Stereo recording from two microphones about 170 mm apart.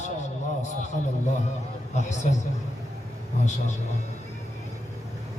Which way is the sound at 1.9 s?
45° left (ahead or behind).